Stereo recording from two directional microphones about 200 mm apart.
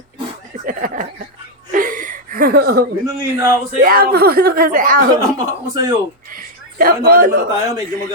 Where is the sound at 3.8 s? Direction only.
50° right (ahead or behind).